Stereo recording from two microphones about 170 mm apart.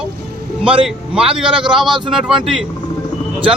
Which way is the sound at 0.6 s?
30° right (ahead or behind).